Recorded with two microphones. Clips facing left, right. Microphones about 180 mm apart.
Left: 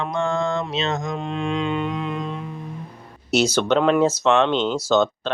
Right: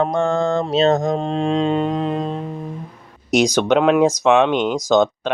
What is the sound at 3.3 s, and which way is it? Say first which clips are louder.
Speech: right 3 dB; 10° right (ahead or behind).